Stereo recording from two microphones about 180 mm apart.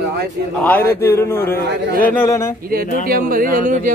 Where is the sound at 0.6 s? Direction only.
10° left (ahead or behind).